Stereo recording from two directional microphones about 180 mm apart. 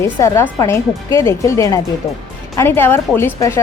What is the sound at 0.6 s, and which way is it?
A woman's voice, 15° left (ahead or behind).